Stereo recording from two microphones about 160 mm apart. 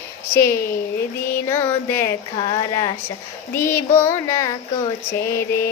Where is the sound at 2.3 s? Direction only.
30° left (ahead or behind).